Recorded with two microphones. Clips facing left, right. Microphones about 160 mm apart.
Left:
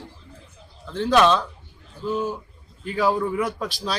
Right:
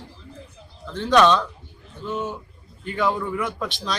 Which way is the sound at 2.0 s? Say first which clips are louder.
Left 3 dB; 35° left (ahead or behind).